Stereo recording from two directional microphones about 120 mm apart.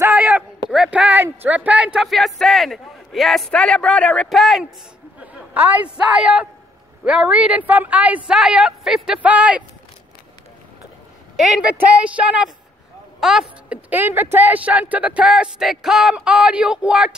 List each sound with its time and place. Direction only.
0.0 s speech: 10° right (ahead or behind)
5.2 s a sound: 15° right (ahead or behind)
6.0 s speech: 10° right (ahead or behind)
11.3 s a man's voice: centre (ahead or behind)